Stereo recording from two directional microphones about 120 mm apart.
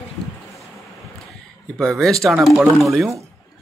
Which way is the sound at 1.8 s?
5° left (ahead or behind).